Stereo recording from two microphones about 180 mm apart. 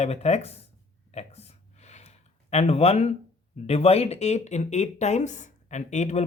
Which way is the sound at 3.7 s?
35° left (ahead or behind).